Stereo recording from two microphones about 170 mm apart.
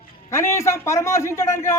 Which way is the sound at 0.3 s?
15° left (ahead or behind).